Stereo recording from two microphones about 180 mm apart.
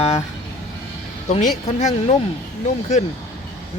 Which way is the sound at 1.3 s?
40° left (ahead or behind).